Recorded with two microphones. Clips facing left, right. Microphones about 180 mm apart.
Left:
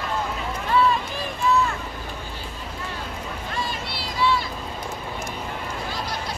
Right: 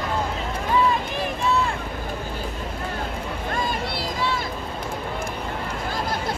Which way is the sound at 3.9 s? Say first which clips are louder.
Left 2 dB; 50° right (ahead or behind).